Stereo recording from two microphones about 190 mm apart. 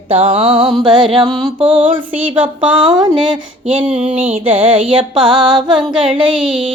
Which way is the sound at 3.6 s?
30° right (ahead or behind).